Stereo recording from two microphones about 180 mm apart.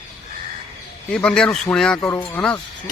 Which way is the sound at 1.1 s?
5° left (ahead or behind).